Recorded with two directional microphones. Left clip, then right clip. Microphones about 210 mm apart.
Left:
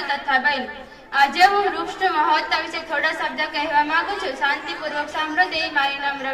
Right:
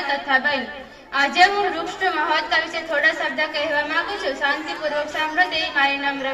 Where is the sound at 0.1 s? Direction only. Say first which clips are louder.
Even; 50° left (ahead or behind).